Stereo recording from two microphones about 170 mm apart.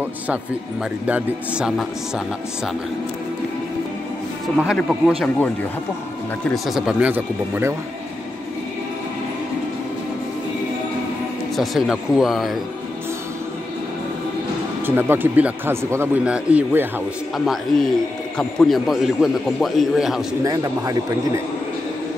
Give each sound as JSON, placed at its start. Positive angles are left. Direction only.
{"t": 1.0, "sound": "a man's voice", "side_deg": -5}
{"t": 4.6, "sound": "a man's voice", "side_deg": -5}
{"t": 6.4, "sound": "a man's voice", "side_deg": 0}
{"t": 11.5, "sound": "a man's voice", "side_deg": 0}
{"t": 14.9, "sound": "a man's voice", "side_deg": -10}
{"t": 20.4, "sound": "speech", "side_deg": -20}